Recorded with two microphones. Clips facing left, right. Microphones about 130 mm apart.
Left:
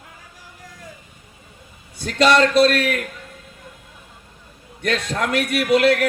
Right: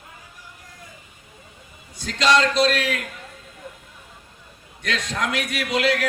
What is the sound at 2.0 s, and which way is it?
A man's voice, 55° left (ahead or behind).